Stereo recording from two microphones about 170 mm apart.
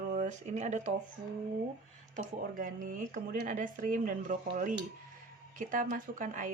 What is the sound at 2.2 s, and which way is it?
Speech, 50° right (ahead or behind).